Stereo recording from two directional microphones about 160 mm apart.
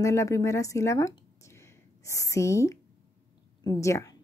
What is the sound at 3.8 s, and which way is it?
Speech, 20° left (ahead or behind).